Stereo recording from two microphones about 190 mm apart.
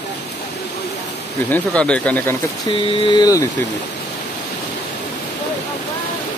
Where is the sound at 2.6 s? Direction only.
25° left (ahead or behind).